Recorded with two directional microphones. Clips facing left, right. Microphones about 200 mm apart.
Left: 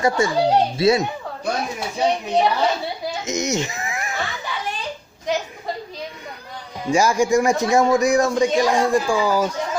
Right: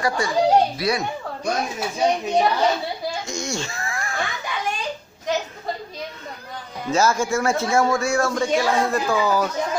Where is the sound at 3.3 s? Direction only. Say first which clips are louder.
Left 5 dB; 20° left (ahead or behind).